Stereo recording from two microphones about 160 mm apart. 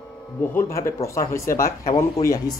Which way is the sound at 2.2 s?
40° left (ahead or behind).